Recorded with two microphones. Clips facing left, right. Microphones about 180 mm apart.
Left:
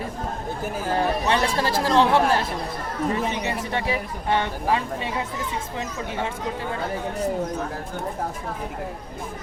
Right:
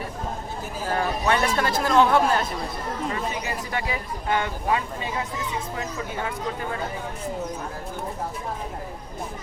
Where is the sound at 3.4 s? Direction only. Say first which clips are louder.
Left 3 dB; 25° left (ahead or behind).